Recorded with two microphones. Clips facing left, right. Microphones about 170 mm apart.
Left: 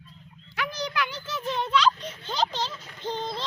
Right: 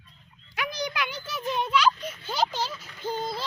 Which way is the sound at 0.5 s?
15° right (ahead or behind).